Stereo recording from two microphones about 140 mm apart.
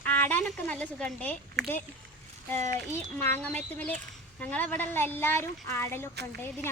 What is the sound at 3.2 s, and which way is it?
A woman's voice, 15° left (ahead or behind).